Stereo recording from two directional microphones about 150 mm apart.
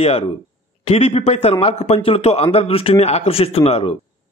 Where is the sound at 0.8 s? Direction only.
40° left (ahead or behind).